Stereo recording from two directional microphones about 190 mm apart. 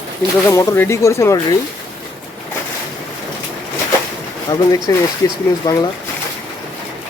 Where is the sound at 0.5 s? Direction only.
15° left (ahead or behind).